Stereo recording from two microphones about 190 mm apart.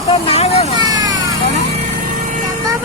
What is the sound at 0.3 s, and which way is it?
Speech, 35° left (ahead or behind).